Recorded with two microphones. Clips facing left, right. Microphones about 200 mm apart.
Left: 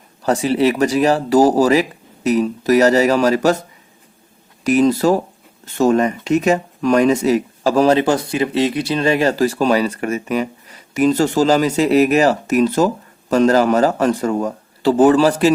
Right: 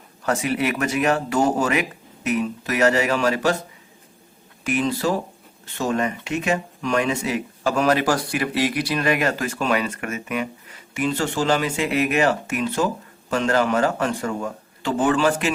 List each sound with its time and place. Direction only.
0.2 s speech: 30° left (ahead or behind)
4.6 s speech: 40° left (ahead or behind)